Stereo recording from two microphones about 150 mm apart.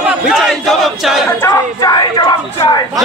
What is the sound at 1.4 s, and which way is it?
Speech, 20° left (ahead or behind).